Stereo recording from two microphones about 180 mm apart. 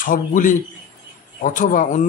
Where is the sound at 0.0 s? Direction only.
50° left (ahead or behind).